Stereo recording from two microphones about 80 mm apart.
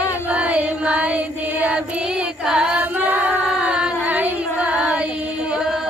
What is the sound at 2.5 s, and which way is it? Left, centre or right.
Female singing, centre.